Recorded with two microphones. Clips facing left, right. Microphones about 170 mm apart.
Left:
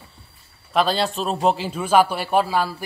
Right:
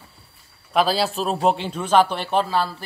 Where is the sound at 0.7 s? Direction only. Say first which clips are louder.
Even; 5° right (ahead or behind).